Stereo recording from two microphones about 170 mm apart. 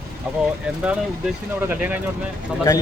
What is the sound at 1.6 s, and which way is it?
Speech, 10° right (ahead or behind).